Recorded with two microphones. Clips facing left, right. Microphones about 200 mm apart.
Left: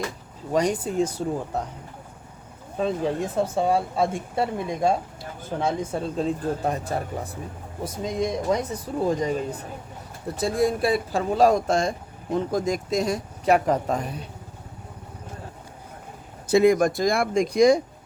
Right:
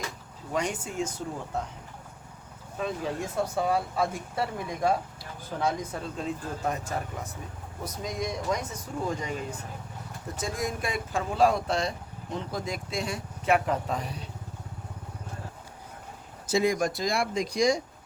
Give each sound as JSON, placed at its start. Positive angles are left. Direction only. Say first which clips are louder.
{"t": 0.5, "sound": "speech", "louder": "left 8 dB", "side_deg": 35}
{"t": 2.7, "sound": "speech", "louder": "left 7 dB", "side_deg": 30}
{"t": 16.5, "sound": "speech", "louder": "left 8 dB", "side_deg": 55}